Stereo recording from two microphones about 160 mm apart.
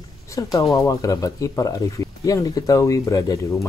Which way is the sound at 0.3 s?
20° left (ahead or behind).